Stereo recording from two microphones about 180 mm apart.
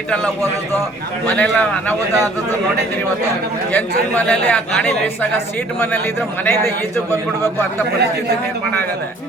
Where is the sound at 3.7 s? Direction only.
10° left (ahead or behind).